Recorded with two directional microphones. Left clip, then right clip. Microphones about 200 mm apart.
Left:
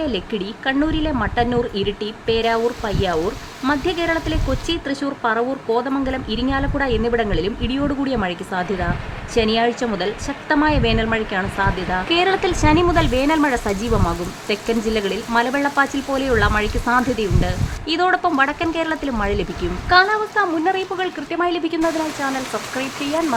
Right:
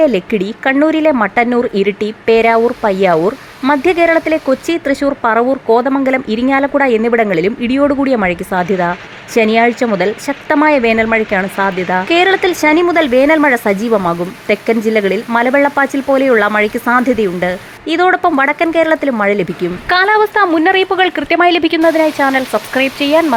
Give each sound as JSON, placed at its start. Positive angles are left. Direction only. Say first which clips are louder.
{"t": 0.4, "sound": "speech", "louder": "right 8 dB", "side_deg": -25}